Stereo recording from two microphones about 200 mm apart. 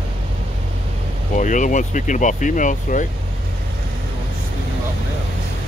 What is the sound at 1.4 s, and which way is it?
Speech, 40° left (ahead or behind).